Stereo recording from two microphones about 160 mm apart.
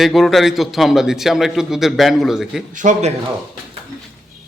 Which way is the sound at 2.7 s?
50° right (ahead or behind).